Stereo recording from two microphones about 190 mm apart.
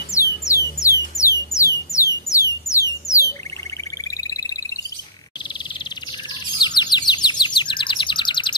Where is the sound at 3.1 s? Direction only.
15° left (ahead or behind).